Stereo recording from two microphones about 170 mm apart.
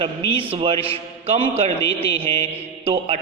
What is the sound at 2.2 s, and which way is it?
Mantra, 35° right (ahead or behind).